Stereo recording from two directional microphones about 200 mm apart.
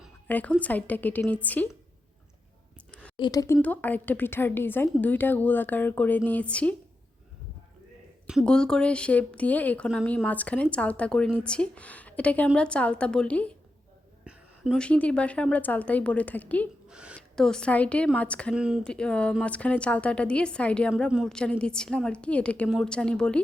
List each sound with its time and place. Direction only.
0.3 s speech: 10° left (ahead or behind)
3.2 s speech: 20° left (ahead or behind)
8.3 s speech: centre (ahead or behind)
16.9 s speech: 5° right (ahead or behind)
18.5 s speech: 5° right (ahead or behind)